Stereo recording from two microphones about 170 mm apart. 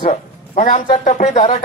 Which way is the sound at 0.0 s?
45° left (ahead or behind).